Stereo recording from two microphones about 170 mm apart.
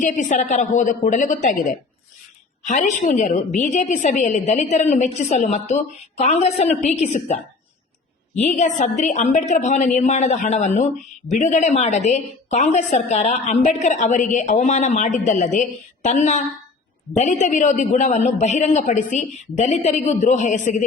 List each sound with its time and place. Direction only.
0.0 s a woman's voice: 45° left (ahead or behind)
8.4 s a woman's voice: 45° left (ahead or behind)